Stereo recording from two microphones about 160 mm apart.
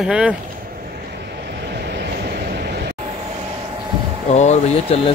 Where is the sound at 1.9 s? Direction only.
80° right.